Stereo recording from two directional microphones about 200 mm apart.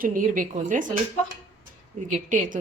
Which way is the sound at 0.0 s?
45° right (ahead or behind).